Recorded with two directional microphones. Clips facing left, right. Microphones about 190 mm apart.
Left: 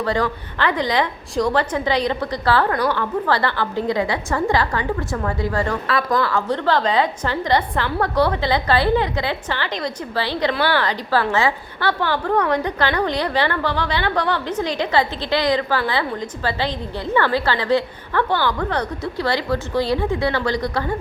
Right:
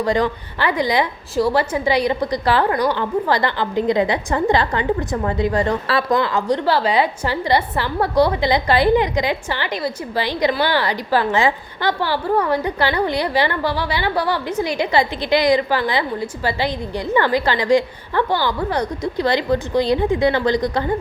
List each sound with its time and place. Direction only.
0.0 s a woman's voice: 15° right (ahead or behind)